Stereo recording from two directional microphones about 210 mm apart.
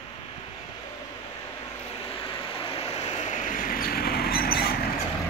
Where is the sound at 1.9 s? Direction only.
25° left (ahead or behind); by 4.7 s 45° left (ahead or behind).